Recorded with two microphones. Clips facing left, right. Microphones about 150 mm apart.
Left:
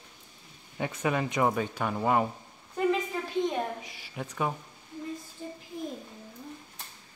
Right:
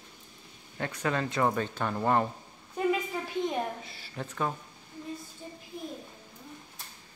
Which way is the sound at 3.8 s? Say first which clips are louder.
Left 1 dB; 15° left (ahead or behind).